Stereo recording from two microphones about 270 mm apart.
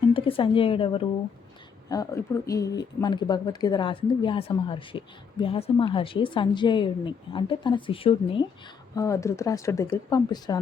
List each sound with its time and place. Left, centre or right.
0.1 s a woman's voice: centre